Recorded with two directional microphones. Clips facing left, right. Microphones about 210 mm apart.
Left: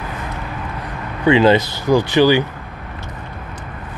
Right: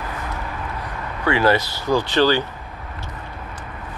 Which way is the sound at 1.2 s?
20° left (ahead or behind).